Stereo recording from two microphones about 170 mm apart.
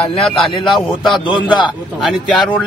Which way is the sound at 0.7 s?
Centre (ahead or behind).